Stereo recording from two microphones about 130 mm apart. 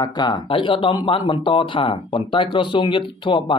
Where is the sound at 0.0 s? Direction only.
35° left (ahead or behind).